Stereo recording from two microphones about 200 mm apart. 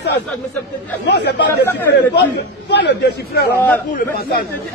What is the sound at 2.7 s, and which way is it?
A man's voice, 60° left (ahead or behind).